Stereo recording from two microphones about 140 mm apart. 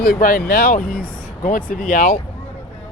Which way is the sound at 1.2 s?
65° left (ahead or behind).